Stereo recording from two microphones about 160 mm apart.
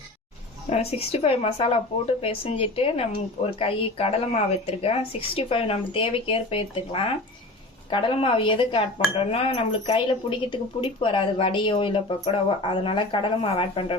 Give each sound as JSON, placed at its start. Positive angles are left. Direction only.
{"t": 0.7, "sound": "speech", "side_deg": 40}